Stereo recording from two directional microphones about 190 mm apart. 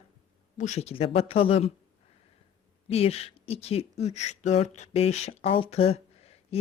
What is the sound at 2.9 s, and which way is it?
Speech, 30° left (ahead or behind).